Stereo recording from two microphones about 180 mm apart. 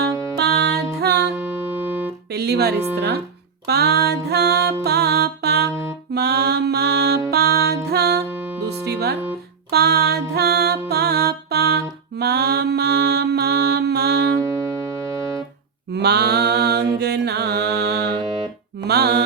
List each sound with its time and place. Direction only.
0.3 s music: 65° right (ahead or behind)
1.4 s music: 10° right (ahead or behind)
2.3 s speech: 65° right (ahead or behind)
3.7 s music: 60° right (ahead or behind)
6.1 s mantra: 60° right (ahead or behind)
7.3 s music: 60° right (ahead or behind)
8.3 s music: 10° right (ahead or behind)
8.8 s music: 65° right (ahead or behind)
15.9 s mantra: 65° right (ahead or behind)
18.9 s music: 60° right (ahead or behind)